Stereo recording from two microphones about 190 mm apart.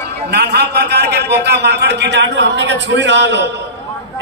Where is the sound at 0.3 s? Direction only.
60° right (ahead or behind).